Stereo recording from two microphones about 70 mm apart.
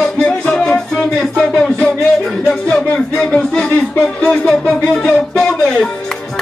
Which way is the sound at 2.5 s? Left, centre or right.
Centre.